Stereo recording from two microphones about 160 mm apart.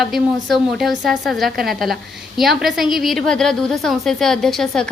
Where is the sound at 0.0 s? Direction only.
Centre (ahead or behind).